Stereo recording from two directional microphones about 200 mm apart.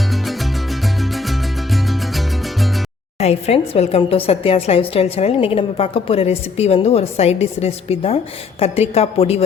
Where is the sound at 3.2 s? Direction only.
30° left (ahead or behind).